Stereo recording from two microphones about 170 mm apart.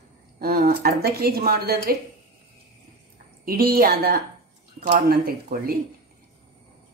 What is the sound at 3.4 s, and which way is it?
A woman's voice, 60° right (ahead or behind).